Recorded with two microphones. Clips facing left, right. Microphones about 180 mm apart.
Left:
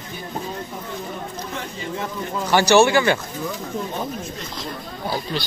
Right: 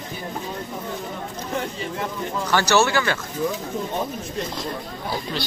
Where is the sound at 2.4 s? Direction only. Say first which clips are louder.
Left 5 dB; 15° left (ahead or behind).